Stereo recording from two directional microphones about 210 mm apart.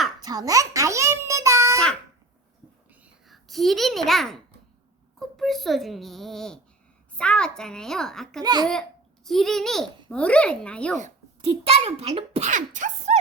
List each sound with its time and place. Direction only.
0.2 s a child's voice: 20° right (ahead or behind)
2.9 s a sound: 5° right (ahead or behind)
5.4 s a child's voice: centre (ahead or behind)
8.4 s a child's voice: 20° right (ahead or behind)
9.2 s a child's voice: centre (ahead or behind)
10.9 s a child's voice: 30° right (ahead or behind)